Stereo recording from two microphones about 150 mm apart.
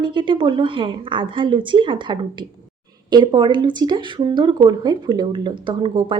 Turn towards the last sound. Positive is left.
turn(degrees=-35)  # may be behind; listen again after turning